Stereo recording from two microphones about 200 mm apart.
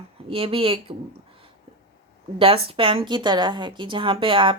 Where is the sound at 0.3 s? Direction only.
25° right (ahead or behind).